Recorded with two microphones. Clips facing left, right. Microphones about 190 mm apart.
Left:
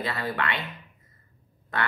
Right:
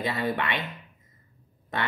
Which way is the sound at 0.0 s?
20° right (ahead or behind).